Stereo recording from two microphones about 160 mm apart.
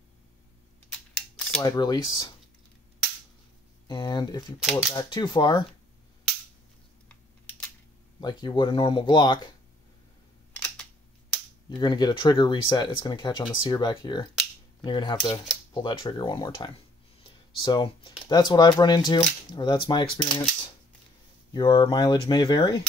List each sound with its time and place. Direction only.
1.6 s speech: 25° left (ahead or behind)
3.8 s speech: 25° left (ahead or behind)
7.1 s computer keyboard: 10° left (ahead or behind)
8.2 s speech: 25° left (ahead or behind)
10.5 s a sound: 5° left (ahead or behind)
11.8 s speech: 30° left (ahead or behind)
21.5 s speech: 25° left (ahead or behind)